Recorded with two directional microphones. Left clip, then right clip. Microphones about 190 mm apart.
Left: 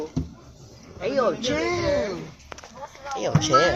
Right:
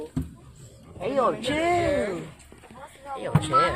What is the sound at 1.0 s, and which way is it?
Speech, 30° right (ahead or behind).